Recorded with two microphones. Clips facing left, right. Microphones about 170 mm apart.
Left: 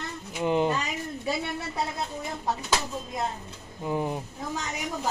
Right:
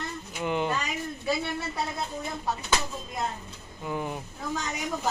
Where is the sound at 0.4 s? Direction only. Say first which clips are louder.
Left 4 dB; 30° left (ahead or behind).